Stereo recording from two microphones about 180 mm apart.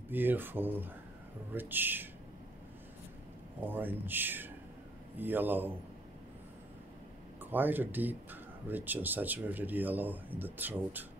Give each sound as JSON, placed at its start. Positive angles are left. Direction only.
{"t": 0.1, "sound": "speech", "side_deg": -10}
{"t": 3.6, "sound": "speech", "side_deg": -10}
{"t": 7.5, "sound": "speech", "side_deg": -10}